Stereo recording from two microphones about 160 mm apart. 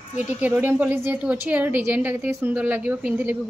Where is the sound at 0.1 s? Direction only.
10° right (ahead or behind).